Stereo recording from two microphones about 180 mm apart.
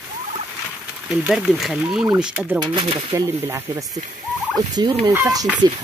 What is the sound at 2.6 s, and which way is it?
Speech, 30° right (ahead or behind).